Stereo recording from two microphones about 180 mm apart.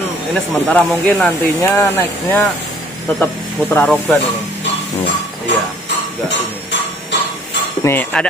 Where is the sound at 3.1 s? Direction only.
10° left (ahead or behind).